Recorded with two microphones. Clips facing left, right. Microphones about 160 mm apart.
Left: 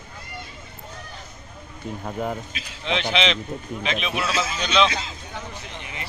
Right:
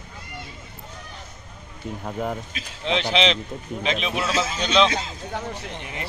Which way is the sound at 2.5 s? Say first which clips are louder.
Right 2 dB; 30° right (ahead or behind).